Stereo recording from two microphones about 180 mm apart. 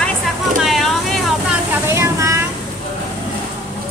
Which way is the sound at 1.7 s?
15° right (ahead or behind).